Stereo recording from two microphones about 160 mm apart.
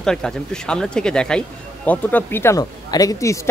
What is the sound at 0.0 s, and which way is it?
Speech, 5° left (ahead or behind).